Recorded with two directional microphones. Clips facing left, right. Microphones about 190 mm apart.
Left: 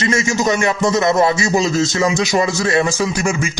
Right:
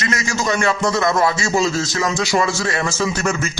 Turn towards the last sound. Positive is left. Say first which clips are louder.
# left 2 dB
turn(degrees=10)  # may be behind; listen again after turning